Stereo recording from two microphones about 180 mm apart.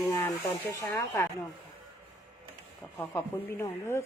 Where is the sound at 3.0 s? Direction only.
15° left (ahead or behind).